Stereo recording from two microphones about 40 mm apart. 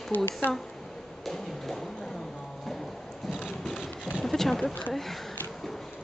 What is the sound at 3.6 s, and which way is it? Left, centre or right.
Clip-clop, centre.